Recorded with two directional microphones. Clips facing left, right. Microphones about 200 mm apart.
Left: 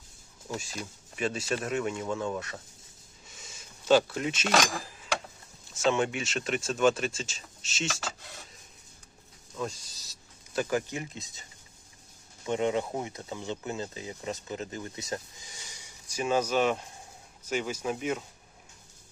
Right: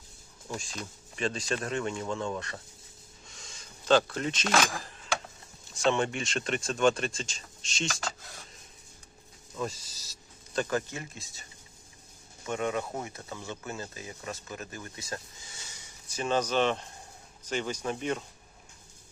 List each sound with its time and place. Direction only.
0.4 s speech: 5° left (ahead or behind)
9.6 s speech: centre (ahead or behind); by 11.4 s 20° left (ahead or behind)
12.5 s speech: 20° left (ahead or behind)